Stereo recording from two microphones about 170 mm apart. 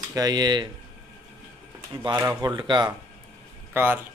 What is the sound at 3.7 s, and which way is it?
Speech, 10° right (ahead or behind).